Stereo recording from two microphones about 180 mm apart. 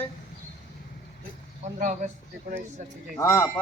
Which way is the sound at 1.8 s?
40° right (ahead or behind).